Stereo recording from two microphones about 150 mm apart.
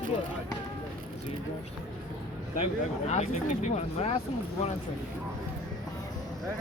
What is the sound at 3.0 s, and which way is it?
Speech, 50° left (ahead or behind).